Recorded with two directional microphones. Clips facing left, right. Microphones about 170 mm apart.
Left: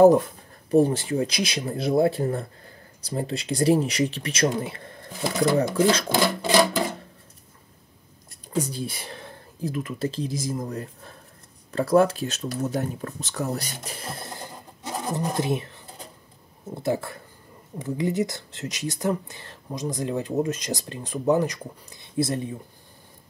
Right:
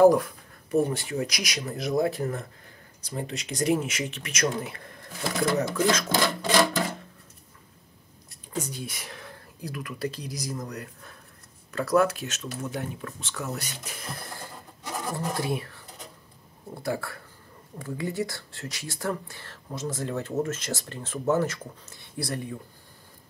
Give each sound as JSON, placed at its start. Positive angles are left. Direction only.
{"t": 0.0, "sound": "speech", "side_deg": 25}
{"t": 8.5, "sound": "speech", "side_deg": 30}